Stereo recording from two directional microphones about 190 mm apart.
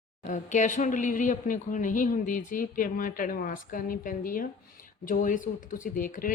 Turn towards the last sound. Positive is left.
turn(degrees=45)  # may be behind; listen again after turning